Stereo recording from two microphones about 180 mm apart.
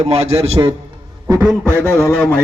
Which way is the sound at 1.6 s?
15° left (ahead or behind).